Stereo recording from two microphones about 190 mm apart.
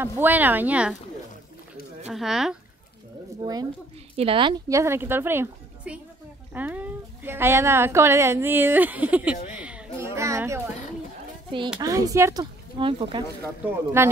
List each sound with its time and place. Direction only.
0.0 s a woman's voice: 10° right (ahead or behind)
2.0 s speech: centre (ahead or behind)
3.4 s a woman's voice: 20° right (ahead or behind)
9.5 s a sound: 5° right (ahead or behind)
9.9 s a child's voice: 15° right (ahead or behind)
11.8 s a woman's voice: 20° right (ahead or behind)
14.0 s a woman's voice: 15° right (ahead or behind)